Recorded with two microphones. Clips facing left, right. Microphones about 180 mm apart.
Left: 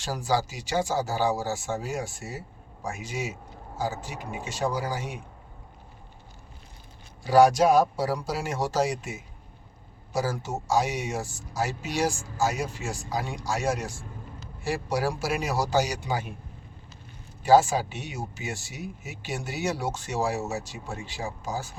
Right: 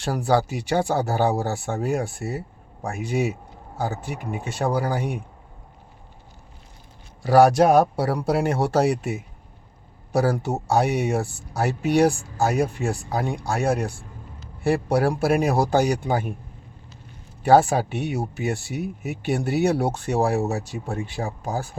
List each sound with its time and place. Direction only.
0.0 s speech: 60° right (ahead or behind)
7.2 s speech: 65° right (ahead or behind)
17.4 s speech: 60° right (ahead or behind)